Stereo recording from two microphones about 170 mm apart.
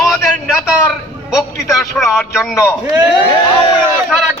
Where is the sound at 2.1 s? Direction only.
Centre (ahead or behind).